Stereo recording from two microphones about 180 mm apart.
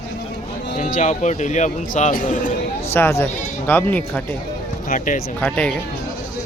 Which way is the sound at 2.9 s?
10° left (ahead or behind).